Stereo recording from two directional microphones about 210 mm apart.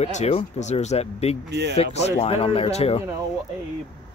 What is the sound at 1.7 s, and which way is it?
Speech, 30° left (ahead or behind).